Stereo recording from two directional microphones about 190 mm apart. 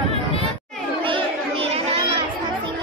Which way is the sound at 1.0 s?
30° right (ahead or behind).